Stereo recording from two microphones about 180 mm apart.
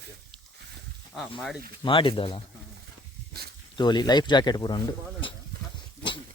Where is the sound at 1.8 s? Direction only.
30° left (ahead or behind).